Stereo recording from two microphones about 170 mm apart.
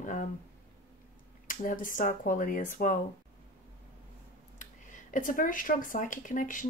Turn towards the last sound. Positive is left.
turn(degrees=50)  # may be behind; listen again after turning